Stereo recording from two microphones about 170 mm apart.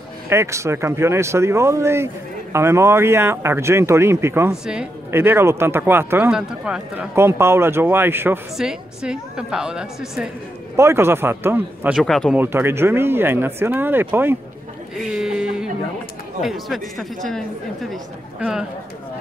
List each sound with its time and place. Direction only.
0.3 s a woman's voice: 15° right (ahead or behind)
10.8 s speech: 15° right (ahead or behind)
12.0 s a woman's voice: centre (ahead or behind)
12.4 s speech: 15° right (ahead or behind)
15.0 s a sound: 5° right (ahead or behind)
16.4 s a woman's voice: centre (ahead or behind)